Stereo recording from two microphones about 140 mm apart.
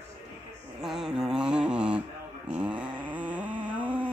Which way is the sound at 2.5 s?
10° right (ahead or behind).